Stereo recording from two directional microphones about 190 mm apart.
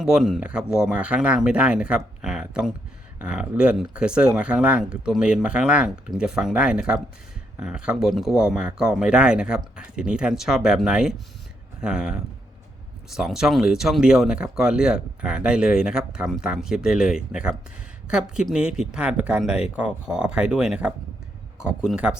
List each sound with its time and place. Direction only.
0.0 s speech: 5° right (ahead or behind)